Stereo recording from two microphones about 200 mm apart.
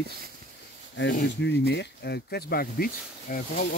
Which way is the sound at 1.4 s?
60° left (ahead or behind).